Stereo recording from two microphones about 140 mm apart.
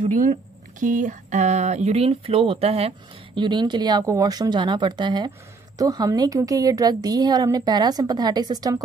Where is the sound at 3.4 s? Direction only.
35° right (ahead or behind).